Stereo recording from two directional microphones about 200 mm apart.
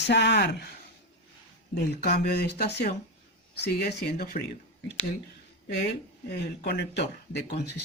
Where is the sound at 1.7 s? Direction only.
50° left (ahead or behind).